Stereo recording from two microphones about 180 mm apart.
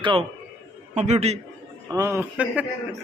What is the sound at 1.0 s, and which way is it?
Speech, 40° right (ahead or behind).